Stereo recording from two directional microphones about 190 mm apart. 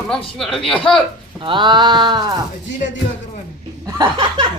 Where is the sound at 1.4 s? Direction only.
25° right (ahead or behind).